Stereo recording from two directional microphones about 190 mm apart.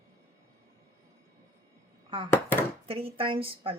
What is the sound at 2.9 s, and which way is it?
Speech, 30° right (ahead or behind).